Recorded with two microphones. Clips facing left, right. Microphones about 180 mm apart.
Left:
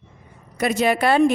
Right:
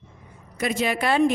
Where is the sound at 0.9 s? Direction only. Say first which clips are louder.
Left 6 dB; 60° left (ahead or behind).